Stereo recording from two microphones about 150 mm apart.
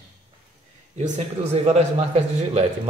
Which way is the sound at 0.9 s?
50° right (ahead or behind).